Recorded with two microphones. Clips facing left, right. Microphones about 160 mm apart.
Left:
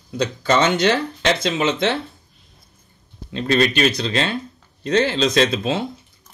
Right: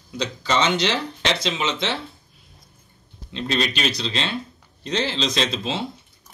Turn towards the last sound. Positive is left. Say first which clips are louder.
# left 6 dB
turn(degrees=50)  # may be behind; listen again after turning